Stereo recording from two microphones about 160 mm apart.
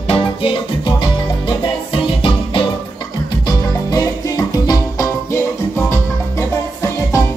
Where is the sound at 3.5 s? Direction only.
20° left (ahead or behind).